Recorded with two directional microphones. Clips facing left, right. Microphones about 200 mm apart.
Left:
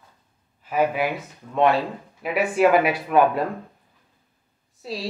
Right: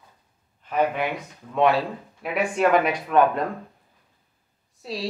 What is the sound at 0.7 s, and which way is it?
Speech, 5° left (ahead or behind).